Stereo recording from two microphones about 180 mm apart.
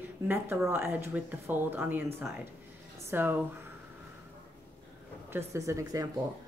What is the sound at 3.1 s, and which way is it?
Speech, 10° right (ahead or behind).